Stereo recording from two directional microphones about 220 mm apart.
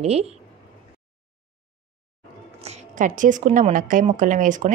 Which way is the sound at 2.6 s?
35° right (ahead or behind).